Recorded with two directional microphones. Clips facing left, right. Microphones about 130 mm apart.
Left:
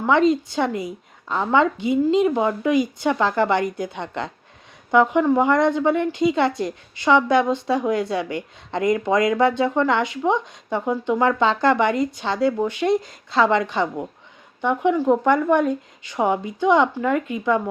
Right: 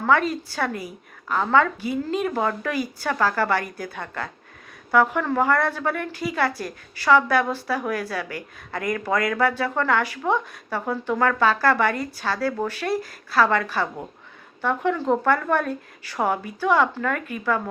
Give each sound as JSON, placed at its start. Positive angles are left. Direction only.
{"t": 0.0, "sound": "a woman's voice", "side_deg": 20}